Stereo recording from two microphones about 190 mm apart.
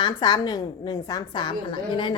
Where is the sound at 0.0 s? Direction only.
25° left (ahead or behind).